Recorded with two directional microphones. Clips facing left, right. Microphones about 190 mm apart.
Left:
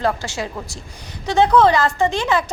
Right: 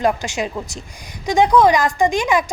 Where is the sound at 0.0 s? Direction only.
15° right (ahead or behind).